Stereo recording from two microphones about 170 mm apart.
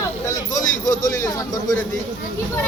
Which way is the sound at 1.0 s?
20° left (ahead or behind).